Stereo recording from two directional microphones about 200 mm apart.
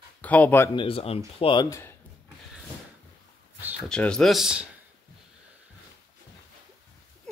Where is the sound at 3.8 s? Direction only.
5° left (ahead or behind).